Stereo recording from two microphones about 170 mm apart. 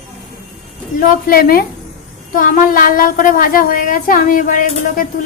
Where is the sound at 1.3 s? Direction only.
60° left (ahead or behind).